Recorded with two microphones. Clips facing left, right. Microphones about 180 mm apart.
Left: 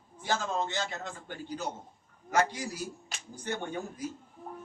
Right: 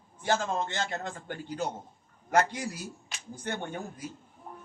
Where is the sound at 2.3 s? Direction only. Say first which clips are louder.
Right 2 dB; 55° right (ahead or behind).